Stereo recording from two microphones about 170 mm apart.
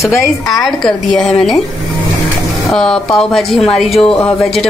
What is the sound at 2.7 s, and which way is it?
A woman's voice, 5° left (ahead or behind).